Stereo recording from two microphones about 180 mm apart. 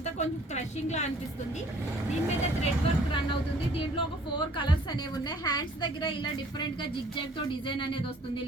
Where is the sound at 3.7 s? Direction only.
25° left (ahead or behind).